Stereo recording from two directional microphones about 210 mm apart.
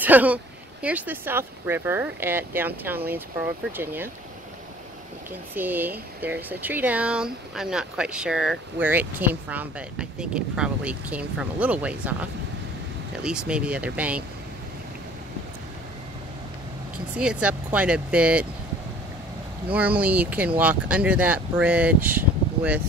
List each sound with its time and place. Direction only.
0.0 s speech: 10° right (ahead or behind)
5.5 s speech: 10° right (ahead or behind)
16.9 s speech: 5° right (ahead or behind)
19.7 s speech: 5° right (ahead or behind)